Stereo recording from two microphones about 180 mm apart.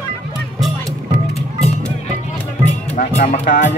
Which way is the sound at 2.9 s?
45° left (ahead or behind).